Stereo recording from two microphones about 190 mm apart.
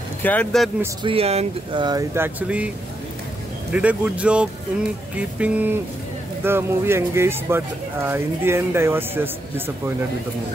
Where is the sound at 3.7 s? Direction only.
5° right (ahead or behind).